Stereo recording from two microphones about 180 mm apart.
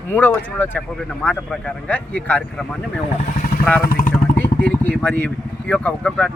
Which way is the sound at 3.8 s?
55° left (ahead or behind).